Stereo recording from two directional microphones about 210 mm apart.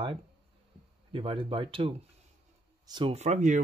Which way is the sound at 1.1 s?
25° right (ahead or behind).